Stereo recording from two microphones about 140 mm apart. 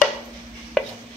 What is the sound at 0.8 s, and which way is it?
Chopping, 5° left (ahead or behind).